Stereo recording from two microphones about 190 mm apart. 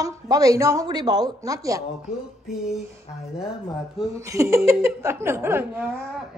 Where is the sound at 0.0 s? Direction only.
20° right (ahead or behind).